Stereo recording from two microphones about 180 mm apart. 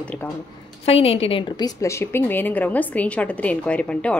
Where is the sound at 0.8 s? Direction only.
35° left (ahead or behind).